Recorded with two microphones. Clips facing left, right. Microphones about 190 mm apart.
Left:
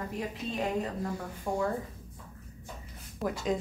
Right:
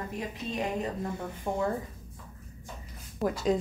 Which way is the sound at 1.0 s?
20° right (ahead or behind).